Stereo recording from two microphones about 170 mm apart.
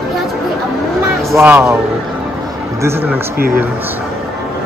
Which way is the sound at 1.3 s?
15° right (ahead or behind).